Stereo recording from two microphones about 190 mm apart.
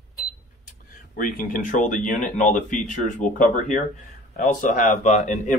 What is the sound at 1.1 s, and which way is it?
Speech, 45° left (ahead or behind).